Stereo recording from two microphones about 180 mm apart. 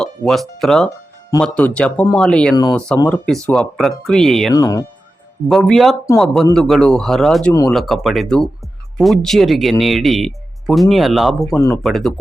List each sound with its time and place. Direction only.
0.0 s music: 5° left (ahead or behind)
0.6 s speech: 5° left (ahead or behind)
4.5 s speech: 20° left (ahead or behind)
5.5 s speech: centre (ahead or behind)